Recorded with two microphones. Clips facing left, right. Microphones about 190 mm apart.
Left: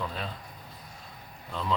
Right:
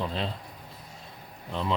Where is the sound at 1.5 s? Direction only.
20° right (ahead or behind).